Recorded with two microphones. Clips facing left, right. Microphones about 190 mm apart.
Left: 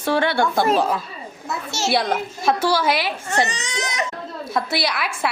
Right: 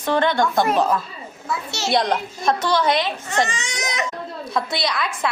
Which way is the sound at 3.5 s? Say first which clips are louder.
Even; 35° left (ahead or behind).